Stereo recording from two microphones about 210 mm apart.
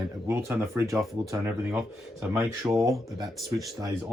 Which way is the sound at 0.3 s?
10° right (ahead or behind).